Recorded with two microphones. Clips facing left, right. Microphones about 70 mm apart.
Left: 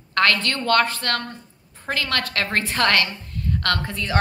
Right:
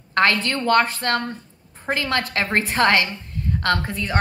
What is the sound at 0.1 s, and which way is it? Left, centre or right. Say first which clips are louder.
A woman's voice: right 1 dB; centre.